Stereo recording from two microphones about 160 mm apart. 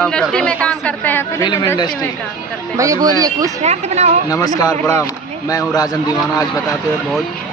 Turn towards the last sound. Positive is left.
turn(degrees=25)  # may be behind; listen again after turning